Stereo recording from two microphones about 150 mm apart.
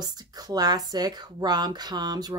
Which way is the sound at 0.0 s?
25° right (ahead or behind).